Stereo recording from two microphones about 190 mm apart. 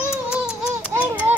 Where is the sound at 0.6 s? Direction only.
10° right (ahead or behind).